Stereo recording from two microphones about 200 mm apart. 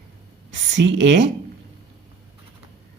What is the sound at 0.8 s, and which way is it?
Speech, 65° right (ahead or behind).